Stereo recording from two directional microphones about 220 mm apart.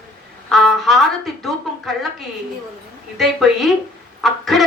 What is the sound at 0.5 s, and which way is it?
Speech, centre (ahead or behind).